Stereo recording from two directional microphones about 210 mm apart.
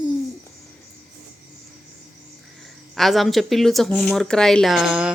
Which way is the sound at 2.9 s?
Centre (ahead or behind).